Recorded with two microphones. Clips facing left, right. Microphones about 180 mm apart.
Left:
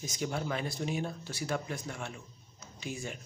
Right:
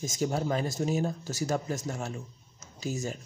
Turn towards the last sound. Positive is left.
turn(degrees=-40)  # may be behind; listen again after turning